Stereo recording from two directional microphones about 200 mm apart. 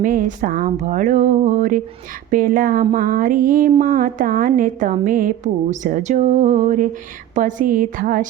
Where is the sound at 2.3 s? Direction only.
45° right (ahead or behind).